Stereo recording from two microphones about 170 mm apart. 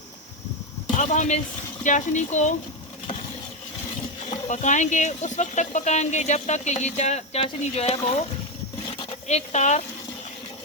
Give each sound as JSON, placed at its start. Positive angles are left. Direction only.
{"t": 0.9, "sound": "speech", "side_deg": 45}
{"t": 4.3, "sound": "speech", "side_deg": 45}
{"t": 8.9, "sound": "a sound", "side_deg": 30}